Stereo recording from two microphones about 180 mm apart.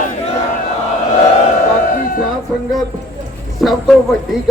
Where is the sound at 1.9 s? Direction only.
50° left (ahead or behind).